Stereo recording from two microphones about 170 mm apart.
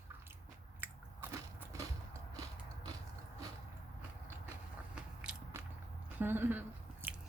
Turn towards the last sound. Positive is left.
turn(degrees=-10)  # may be behind; listen again after turning